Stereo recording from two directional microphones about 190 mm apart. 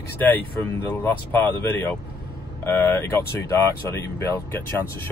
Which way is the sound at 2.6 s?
10° left (ahead or behind).